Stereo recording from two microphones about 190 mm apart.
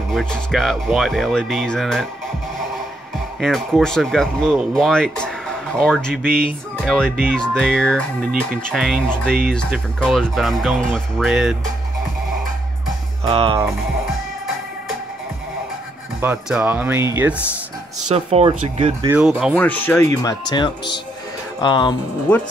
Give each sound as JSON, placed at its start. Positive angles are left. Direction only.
{"t": 0.1, "sound": "speech", "side_deg": 0}
{"t": 3.3, "sound": "speech", "side_deg": 0}
{"t": 13.2, "sound": "speech", "side_deg": -30}
{"t": 16.2, "sound": "speech", "side_deg": -5}
{"t": 18.0, "sound": "speech", "side_deg": -35}
{"t": 19.0, "sound": "speech", "side_deg": -10}
{"t": 19.5, "sound": "speech", "side_deg": 10}